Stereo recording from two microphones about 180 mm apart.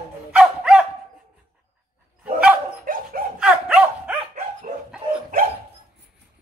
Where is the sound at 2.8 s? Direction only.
50° right (ahead or behind).